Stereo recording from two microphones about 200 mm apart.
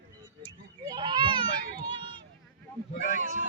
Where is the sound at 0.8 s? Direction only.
20° right (ahead or behind).